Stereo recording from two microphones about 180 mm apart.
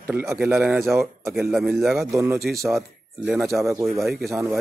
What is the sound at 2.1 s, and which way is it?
Speech, 15° right (ahead or behind).